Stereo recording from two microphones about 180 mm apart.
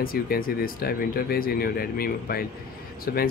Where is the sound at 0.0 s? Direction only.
55° left (ahead or behind).